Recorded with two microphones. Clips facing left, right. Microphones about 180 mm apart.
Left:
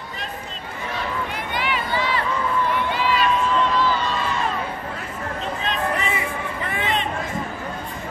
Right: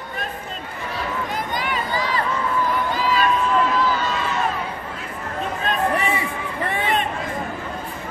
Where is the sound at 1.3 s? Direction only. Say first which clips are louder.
Right 1 dB; 40° right (ahead or behind).